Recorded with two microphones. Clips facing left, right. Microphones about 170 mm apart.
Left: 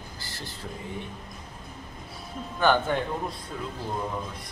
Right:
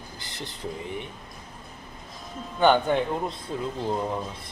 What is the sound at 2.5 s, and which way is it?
Speech, 20° right (ahead or behind).